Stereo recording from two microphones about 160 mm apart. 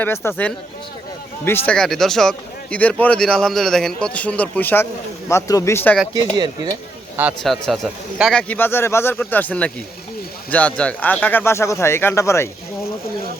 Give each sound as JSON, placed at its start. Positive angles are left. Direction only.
{"t": 0.3, "sound": "speech", "side_deg": 10}
{"t": 6.3, "sound": "speech", "side_deg": -25}
{"t": 7.4, "sound": "speech", "side_deg": 0}